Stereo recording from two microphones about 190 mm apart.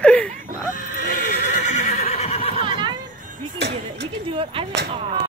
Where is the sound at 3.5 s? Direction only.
65° right (ahead or behind).